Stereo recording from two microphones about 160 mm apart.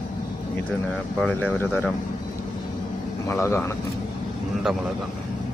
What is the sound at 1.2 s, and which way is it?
Speech, 10° left (ahead or behind).